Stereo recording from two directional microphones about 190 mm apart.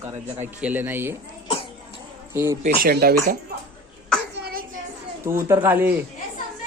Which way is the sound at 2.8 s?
55° right (ahead or behind).